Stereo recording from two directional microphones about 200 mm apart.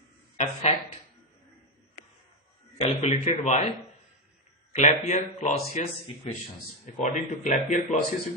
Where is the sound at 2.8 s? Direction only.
35° left (ahead or behind).